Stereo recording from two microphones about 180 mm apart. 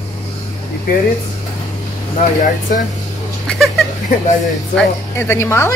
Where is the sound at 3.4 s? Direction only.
5° left (ahead or behind).